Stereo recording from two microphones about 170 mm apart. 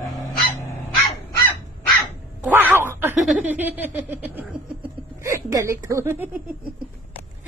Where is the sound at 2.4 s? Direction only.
10° right (ahead or behind).